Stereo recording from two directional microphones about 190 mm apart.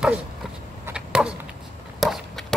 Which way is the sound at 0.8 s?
5° right (ahead or behind).